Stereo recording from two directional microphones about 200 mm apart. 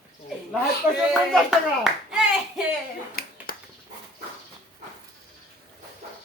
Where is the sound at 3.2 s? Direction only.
50° left (ahead or behind).